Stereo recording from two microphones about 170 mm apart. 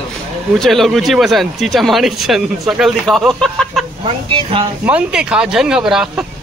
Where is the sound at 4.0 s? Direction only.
35° right (ahead or behind).